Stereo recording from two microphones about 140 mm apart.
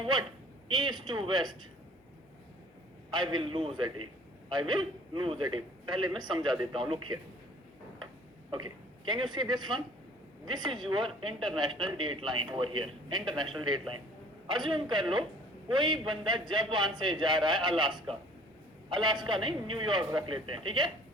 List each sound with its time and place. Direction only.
0.0 s a man's voice: 35° right (ahead or behind)
3.1 s a man's voice: 35° right (ahead or behind)
9.0 s a man's voice: 35° right (ahead or behind)